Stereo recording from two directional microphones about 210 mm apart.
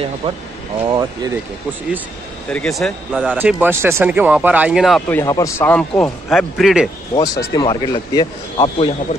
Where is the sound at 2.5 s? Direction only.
Centre (ahead or behind).